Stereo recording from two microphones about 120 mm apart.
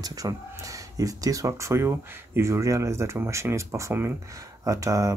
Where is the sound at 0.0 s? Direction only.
30° right (ahead or behind).